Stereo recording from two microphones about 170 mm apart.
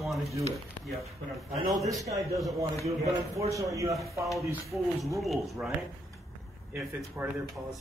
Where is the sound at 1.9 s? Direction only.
20° right (ahead or behind).